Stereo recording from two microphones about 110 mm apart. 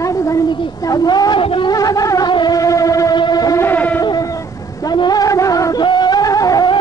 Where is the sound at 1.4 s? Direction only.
55° left (ahead or behind).